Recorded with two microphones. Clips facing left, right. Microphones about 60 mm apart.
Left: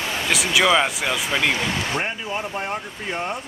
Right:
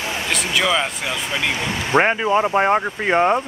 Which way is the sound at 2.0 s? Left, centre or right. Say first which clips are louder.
Right 10 dB; right.